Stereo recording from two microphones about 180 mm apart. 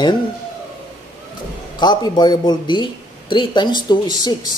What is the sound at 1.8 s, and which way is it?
Speech, 25° left (ahead or behind).